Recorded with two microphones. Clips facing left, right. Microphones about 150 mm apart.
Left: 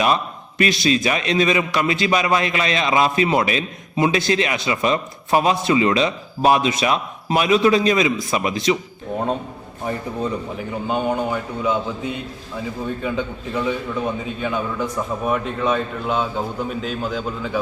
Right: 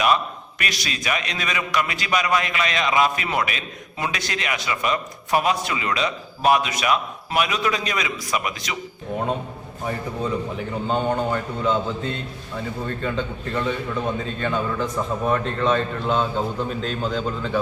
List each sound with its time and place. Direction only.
0.6 s a man's voice: 30° left (ahead or behind)
10.6 s a man's voice: 5° left (ahead or behind)